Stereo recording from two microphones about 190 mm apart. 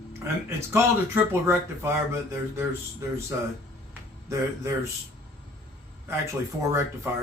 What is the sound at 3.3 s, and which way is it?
A man's voice, 10° right (ahead or behind).